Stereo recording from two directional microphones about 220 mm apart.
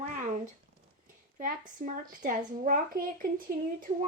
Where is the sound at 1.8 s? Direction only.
40° right (ahead or behind).